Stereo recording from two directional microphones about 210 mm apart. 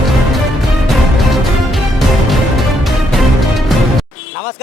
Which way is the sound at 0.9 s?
Centre (ahead or behind).